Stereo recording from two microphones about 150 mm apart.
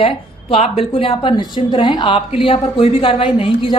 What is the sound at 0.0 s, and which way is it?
A woman's voice, 40° left (ahead or behind).